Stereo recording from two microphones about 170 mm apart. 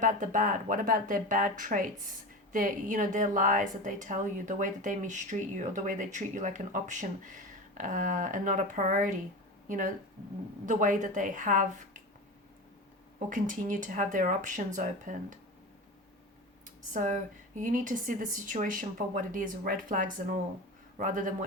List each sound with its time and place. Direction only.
0.0 s a woman's voice: 50° right (ahead or behind)
13.1 s a woman's voice: 50° right (ahead or behind)
16.9 s a woman's voice: 50° right (ahead or behind)